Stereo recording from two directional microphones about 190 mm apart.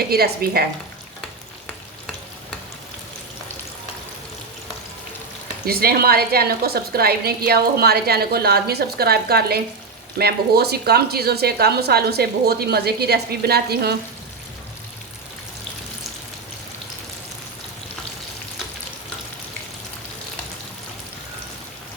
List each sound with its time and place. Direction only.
0.1 s a woman's voice: 55° right (ahead or behind)
5.6 s a woman's voice: 50° right (ahead or behind)